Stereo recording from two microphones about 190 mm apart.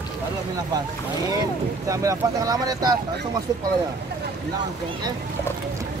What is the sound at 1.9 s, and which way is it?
Speech, 15° right (ahead or behind).